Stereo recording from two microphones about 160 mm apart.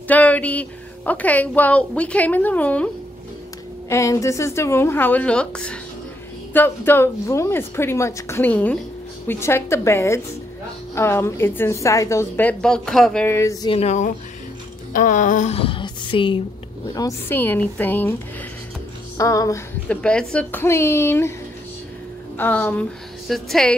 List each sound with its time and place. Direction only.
0.1 s a woman's voice: 10° left (ahead or behind)
3.9 s a woman's voice: 20° left (ahead or behind)
13.7 s a woman's voice: 40° left (ahead or behind)
16.9 s a woman's voice: 15° left (ahead or behind)
19.1 s music: 20° left (ahead or behind)
19.9 s a woman's voice: 5° left (ahead or behind)
22.4 s a woman's voice: 10° left (ahead or behind)